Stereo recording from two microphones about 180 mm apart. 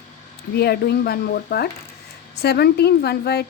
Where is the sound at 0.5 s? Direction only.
60° left (ahead or behind).